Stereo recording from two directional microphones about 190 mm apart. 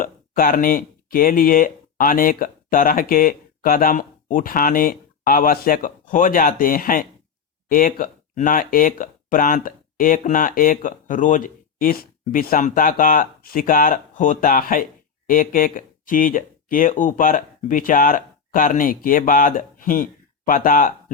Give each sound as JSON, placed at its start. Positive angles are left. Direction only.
{"t": 0.0, "sound": "speech", "side_deg": 45}